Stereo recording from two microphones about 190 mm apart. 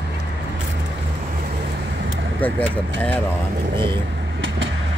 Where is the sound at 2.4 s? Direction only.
10° left (ahead or behind).